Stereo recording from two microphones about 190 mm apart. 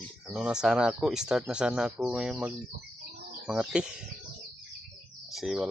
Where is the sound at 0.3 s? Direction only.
5° right (ahead or behind).